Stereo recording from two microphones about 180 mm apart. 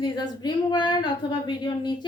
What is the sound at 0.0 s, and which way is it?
A child's voice, 25° left (ahead or behind).